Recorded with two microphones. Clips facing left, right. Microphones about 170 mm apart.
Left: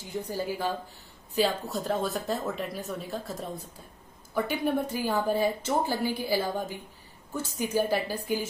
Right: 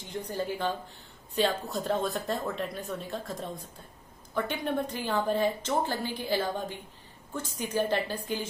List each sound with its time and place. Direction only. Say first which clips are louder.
0.1 s a woman's voice: left 1 dB; 10° left (ahead or behind)